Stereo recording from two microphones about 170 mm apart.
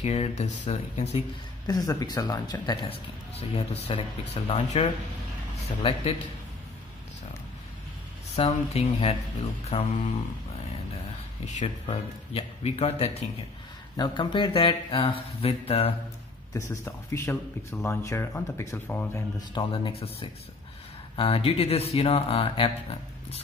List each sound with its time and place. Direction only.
0.0 s speech: 40° left (ahead or behind)
1.7 s speech: 20° left (ahead or behind)
3.8 s speech: 35° left (ahead or behind)
8.4 s speech: 35° left (ahead or behind)
11.4 s speech: 45° left (ahead or behind)
13.9 s speech: 25° left (ahead or behind)
16.5 s speech: 20° left (ahead or behind)
19.5 s speech: 30° left (ahead or behind)